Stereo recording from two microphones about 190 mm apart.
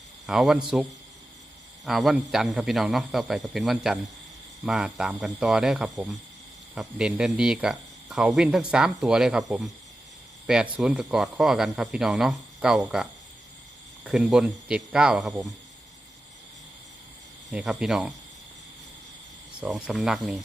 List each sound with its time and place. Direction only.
0.3 s speech: centre (ahead or behind)
10.4 s speech: 5° right (ahead or behind)
17.5 s speech: 5° right (ahead or behind)
19.6 s speech: centre (ahead or behind)